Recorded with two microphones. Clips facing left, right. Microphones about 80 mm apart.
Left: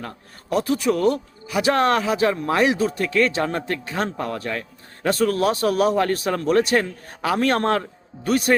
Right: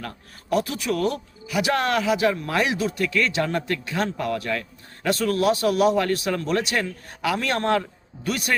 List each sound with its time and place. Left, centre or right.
0.5 s speech: left